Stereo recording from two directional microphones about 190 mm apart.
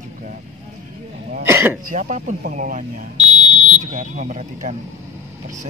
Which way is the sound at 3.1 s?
25° left (ahead or behind).